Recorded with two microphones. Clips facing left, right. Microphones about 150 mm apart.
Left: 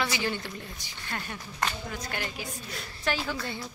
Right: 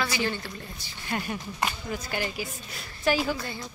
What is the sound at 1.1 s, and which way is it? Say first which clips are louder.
A woman's voice: right 6 dB; 15° right (ahead or behind).